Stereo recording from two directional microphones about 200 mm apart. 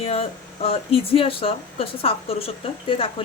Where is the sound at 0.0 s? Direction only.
30° left (ahead or behind).